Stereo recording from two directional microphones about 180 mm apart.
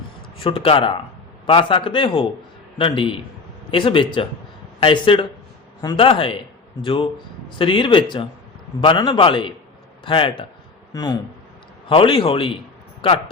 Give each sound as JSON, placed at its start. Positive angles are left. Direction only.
{"t": 0.3, "sound": "a man's voice", "side_deg": 30}